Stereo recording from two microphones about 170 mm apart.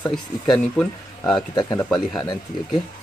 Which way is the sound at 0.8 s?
5° left (ahead or behind).